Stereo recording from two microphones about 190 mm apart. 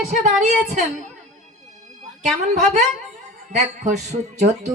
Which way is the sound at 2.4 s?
40° right (ahead or behind).